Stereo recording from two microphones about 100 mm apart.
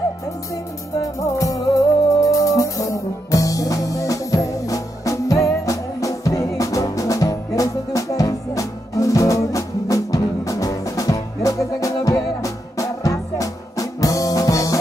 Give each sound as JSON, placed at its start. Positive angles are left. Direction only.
{"t": 1.2, "sound": "music", "side_deg": 35}